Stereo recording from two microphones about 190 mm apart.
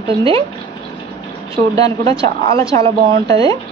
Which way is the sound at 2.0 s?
30° right (ahead or behind).